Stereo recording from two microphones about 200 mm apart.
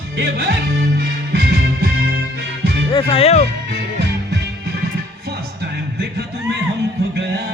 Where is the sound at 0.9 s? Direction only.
50° right (ahead or behind).